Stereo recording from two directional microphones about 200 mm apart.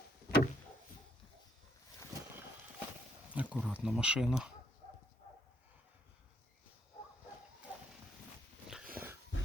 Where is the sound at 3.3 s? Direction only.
5° right (ahead or behind).